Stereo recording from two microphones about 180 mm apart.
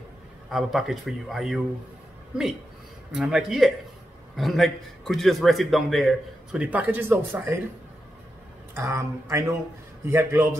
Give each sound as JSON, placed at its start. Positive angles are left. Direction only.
{"t": 0.5, "sound": "a man's voice", "side_deg": 0}
{"t": 3.1, "sound": "a man's voice", "side_deg": -5}
{"t": 8.7, "sound": "speech", "side_deg": -15}